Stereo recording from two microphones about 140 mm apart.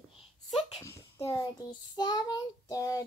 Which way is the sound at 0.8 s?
20° left (ahead or behind).